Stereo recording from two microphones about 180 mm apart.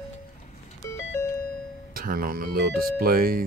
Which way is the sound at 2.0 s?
55° right (ahead or behind).